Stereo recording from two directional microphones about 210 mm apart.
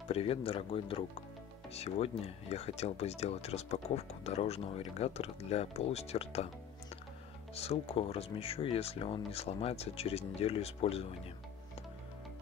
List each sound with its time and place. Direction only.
0.1 s speech: 25° left (ahead or behind)
7.5 s speech: 30° left (ahead or behind)